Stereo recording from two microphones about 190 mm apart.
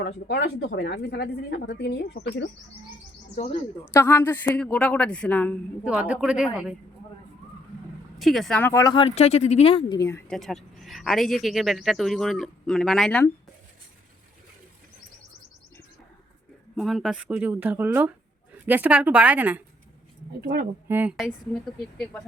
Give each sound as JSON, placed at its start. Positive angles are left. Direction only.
{"t": 0.0, "sound": "a woman's voice", "side_deg": 60}
{"t": 3.3, "sound": "speech", "side_deg": 35}
{"t": 3.9, "sound": "speech", "side_deg": 10}
{"t": 5.8, "sound": "speech", "side_deg": -5}
{"t": 8.2, "sound": "speech", "side_deg": 0}
{"t": 10.0, "sound": "speech", "side_deg": 15}
{"t": 10.3, "sound": "speech", "side_deg": 0}
{"t": 16.7, "sound": "speech", "side_deg": 0}
{"t": 20.4, "sound": "speech", "side_deg": -55}
{"t": 20.8, "sound": "speech", "side_deg": -10}